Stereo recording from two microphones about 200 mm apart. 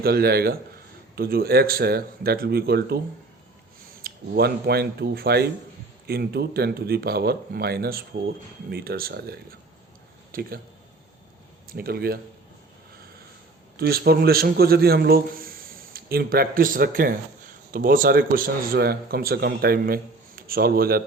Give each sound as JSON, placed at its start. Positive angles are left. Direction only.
{"t": 0.0, "sound": "speech", "side_deg": -50}
{"t": 4.0, "sound": "speech", "side_deg": -50}
{"t": 11.7, "sound": "speech", "side_deg": -50}
{"t": 13.7, "sound": "a man's voice", "side_deg": -50}